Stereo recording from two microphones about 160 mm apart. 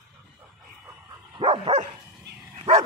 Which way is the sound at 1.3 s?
35° right (ahead or behind).